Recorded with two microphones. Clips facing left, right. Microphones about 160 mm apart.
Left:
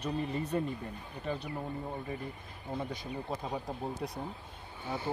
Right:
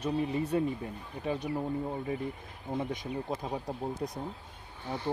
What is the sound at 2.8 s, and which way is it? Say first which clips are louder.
Speech: right 4 dB; 15° right (ahead or behind).